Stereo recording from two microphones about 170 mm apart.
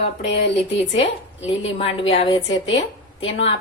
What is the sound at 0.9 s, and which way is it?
A woman's voice, 40° left (ahead or behind).